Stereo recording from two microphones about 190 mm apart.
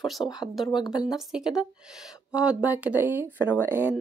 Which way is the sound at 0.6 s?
25° left (ahead or behind).